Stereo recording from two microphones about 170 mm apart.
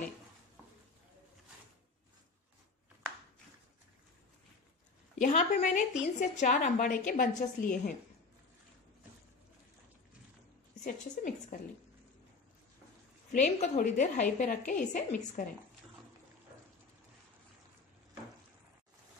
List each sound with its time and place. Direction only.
5.2 s a woman's voice: 45° left (ahead or behind)
10.8 s a woman's voice: 50° left (ahead or behind)
13.3 s a woman's voice: 45° left (ahead or behind)